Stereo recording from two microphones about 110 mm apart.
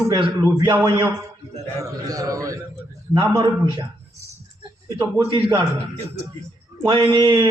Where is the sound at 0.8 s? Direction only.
40° right (ahead or behind).